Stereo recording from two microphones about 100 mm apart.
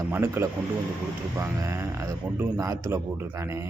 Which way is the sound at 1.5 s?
25° right (ahead or behind).